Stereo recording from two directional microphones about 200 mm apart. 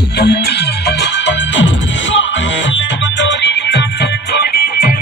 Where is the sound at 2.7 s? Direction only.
65° left (ahead or behind).